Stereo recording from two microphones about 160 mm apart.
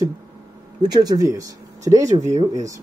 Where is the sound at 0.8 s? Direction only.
25° right (ahead or behind).